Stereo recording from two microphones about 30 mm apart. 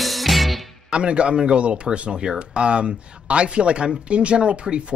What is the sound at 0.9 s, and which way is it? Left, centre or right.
Speech, right.